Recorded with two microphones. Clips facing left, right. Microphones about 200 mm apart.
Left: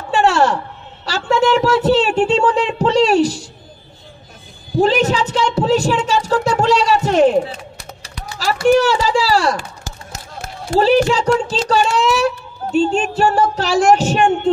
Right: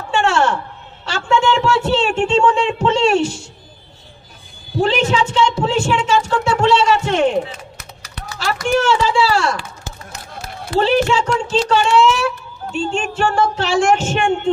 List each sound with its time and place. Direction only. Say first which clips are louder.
0.1 s a sound: left 2 dB; 35° left (ahead or behind)
1.0 s speech: left 1 dB; 35° left (ahead or behind)
4.8 s speech: left 1 dB; 40° left (ahead or behind)